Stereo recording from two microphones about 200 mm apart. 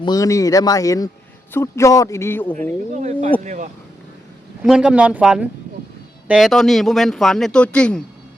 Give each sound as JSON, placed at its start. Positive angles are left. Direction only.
{"t": 0.0, "sound": "a man's voice", "side_deg": 20}
{"t": 2.9, "sound": "speech", "side_deg": -35}
{"t": 4.6, "sound": "speech", "side_deg": -5}